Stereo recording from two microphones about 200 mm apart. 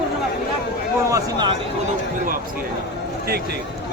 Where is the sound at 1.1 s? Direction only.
20° right (ahead or behind).